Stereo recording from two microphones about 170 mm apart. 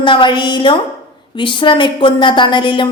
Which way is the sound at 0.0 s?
30° left (ahead or behind).